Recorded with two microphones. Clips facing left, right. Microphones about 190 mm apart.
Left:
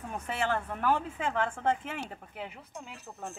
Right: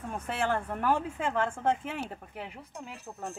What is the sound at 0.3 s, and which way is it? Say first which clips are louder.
Speech: right 1 dB; 10° right (ahead or behind).